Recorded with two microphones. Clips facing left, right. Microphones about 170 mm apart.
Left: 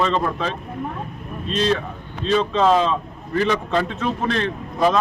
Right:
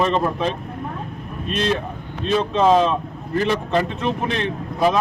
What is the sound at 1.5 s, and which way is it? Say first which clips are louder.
Speech: left 1 dB; 60° right (ahead or behind).